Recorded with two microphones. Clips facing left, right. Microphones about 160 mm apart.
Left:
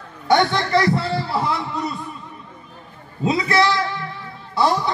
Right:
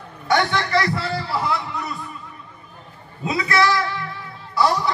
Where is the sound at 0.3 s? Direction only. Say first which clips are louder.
Left 3 dB; 25° left (ahead or behind).